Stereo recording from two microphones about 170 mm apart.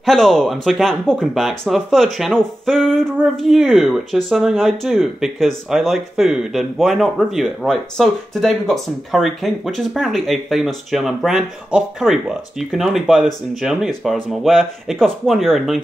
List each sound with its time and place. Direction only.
0.0 s speech: centre (ahead or behind)